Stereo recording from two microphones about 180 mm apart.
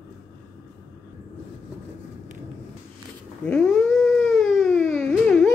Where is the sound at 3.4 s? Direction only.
5° left (ahead or behind).